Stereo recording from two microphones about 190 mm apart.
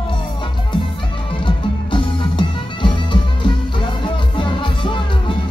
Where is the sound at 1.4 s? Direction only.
25° left (ahead or behind).